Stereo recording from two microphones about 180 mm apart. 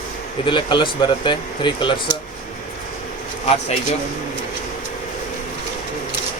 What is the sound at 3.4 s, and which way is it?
Speech, 35° left (ahead or behind).